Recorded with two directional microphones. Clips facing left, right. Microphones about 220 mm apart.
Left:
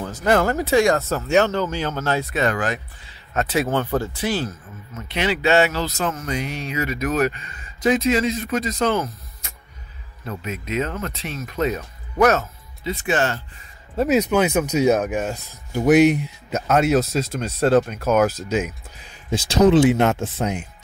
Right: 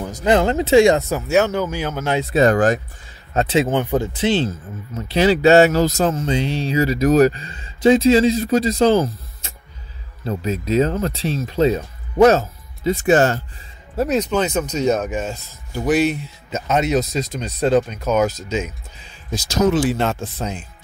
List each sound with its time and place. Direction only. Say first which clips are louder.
0.0 s speech: right 2 dB; 15° right (ahead or behind)
1.2 s speech: even; 5° right (ahead or behind)
2.3 s speech: right 7 dB; 35° right (ahead or behind)
3.3 s speech: right 4 dB; 25° right (ahead or behind); by 6.1 s 40° right (ahead or behind)
6.1 s speech: right 6 dB; 30° right (ahead or behind)
12.8 s speech: right 7 dB; 45° right (ahead or behind)
13.9 s speech: left 1 dB; 5° left (ahead or behind)
19.3 s speech: left 3 dB; 30° left (ahead or behind)